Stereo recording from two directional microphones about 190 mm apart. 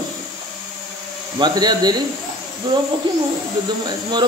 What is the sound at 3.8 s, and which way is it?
Speech, 25° right (ahead or behind).